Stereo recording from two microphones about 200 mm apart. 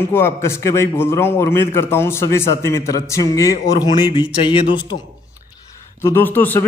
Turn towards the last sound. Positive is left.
turn(degrees=10)  # may be behind; listen again after turning